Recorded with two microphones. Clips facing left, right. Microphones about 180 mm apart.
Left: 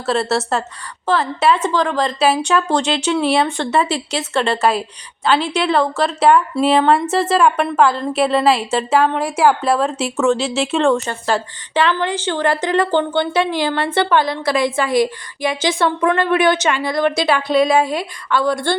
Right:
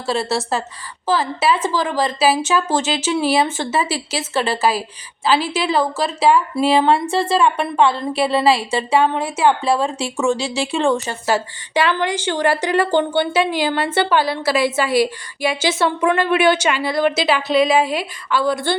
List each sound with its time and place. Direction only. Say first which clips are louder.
0.0 s speech: left 2 dB; centre (ahead or behind)
11.0 s a woman's voice: even; 10° right (ahead or behind)
16.8 s speech: even; 25° right (ahead or behind)
17.7 s speech: left 1 dB; 5° right (ahead or behind)